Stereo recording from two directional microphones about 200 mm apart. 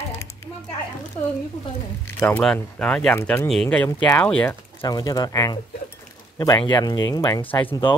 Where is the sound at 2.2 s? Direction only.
5° left (ahead or behind).